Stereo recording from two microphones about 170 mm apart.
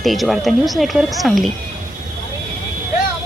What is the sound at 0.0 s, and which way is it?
Speech, centre (ahead or behind).